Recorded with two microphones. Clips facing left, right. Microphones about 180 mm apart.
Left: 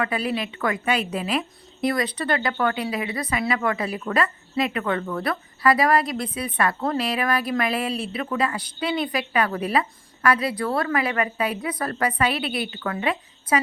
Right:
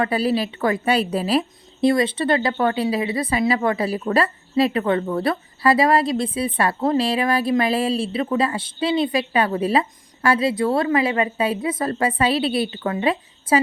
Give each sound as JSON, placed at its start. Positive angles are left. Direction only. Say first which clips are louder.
{"t": 0.0, "sound": "a woman's voice", "louder": "right 5 dB", "side_deg": -30}